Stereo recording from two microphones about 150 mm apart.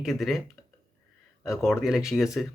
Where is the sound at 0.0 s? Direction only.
Centre (ahead or behind).